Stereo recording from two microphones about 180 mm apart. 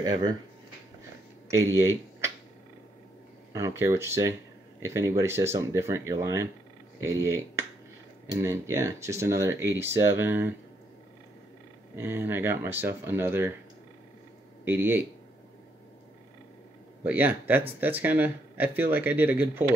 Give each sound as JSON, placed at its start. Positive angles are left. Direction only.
{"t": 0.0, "sound": "speech", "side_deg": -20}
{"t": 1.5, "sound": "speech", "side_deg": -15}
{"t": 3.5, "sound": "speech", "side_deg": -15}
{"t": 11.9, "sound": "speech", "side_deg": -10}
{"t": 14.6, "sound": "speech", "side_deg": -10}
{"t": 17.0, "sound": "speech", "side_deg": -10}